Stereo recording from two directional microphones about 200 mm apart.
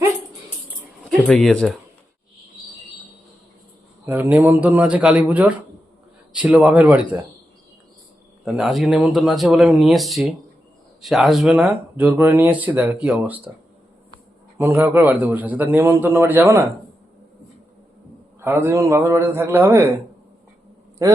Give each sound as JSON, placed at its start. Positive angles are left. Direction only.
{"t": 1.0, "sound": "speech", "side_deg": 5}
{"t": 4.0, "sound": "speech", "side_deg": -10}
{"t": 8.4, "sound": "speech", "side_deg": 0}
{"t": 14.6, "sound": "speech", "side_deg": -10}
{"t": 18.3, "sound": "speech", "side_deg": -10}
{"t": 21.0, "sound": "speech", "side_deg": -15}